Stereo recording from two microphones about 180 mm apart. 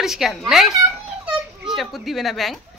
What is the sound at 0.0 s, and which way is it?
Speech, centre (ahead or behind).